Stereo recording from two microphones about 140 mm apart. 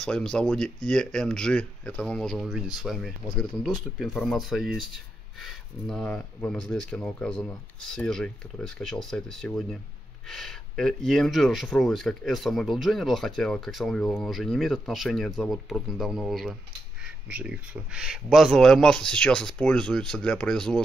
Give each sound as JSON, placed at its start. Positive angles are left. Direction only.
{"t": 0.0, "sound": "speech", "side_deg": 5}